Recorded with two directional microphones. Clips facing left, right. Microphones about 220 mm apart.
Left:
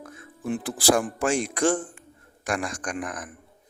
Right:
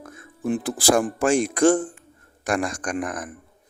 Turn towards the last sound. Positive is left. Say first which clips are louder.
# right 4 dB
turn(degrees=-45)  # may be behind; listen again after turning